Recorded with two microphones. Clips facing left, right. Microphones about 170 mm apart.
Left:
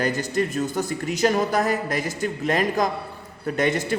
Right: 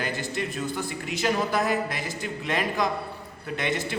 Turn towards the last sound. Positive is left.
turn(degrees=45)  # may be behind; listen again after turning